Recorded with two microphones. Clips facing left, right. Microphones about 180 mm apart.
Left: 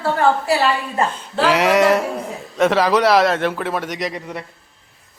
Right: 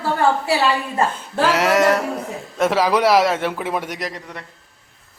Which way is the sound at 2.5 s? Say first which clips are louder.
Left 2 dB; 5° right (ahead or behind).